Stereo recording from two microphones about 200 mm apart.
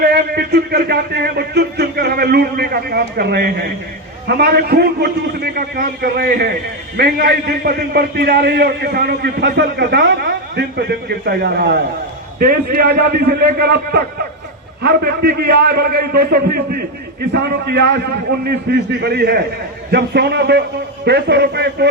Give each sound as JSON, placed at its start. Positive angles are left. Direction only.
{"t": 0.0, "sound": "a man's voice", "side_deg": -55}